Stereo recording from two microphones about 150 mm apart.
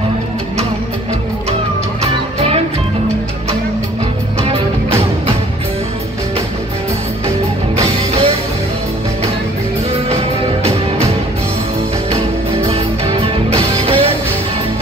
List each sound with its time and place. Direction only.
8.1 s music: 40° right (ahead or behind)
10.0 s music: 40° right (ahead or behind)
13.6 s music: 40° right (ahead or behind)